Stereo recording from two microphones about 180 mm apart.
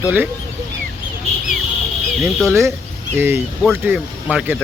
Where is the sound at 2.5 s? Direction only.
15° right (ahead or behind).